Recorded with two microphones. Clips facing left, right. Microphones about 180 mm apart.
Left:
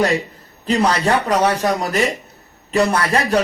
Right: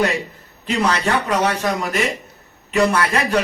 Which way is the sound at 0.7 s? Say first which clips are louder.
Left 3 dB; 35° left (ahead or behind).